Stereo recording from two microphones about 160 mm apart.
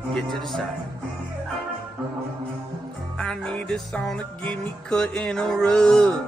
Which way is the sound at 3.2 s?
5° left (ahead or behind).